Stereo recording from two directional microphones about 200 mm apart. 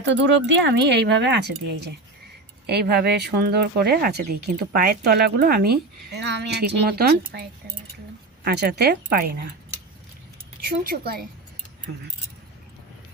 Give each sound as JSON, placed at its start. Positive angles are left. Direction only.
{"t": 0.0, "sound": "speech", "side_deg": -65}
{"t": 8.4, "sound": "speech", "side_deg": -50}
{"t": 10.8, "sound": "speech", "side_deg": -50}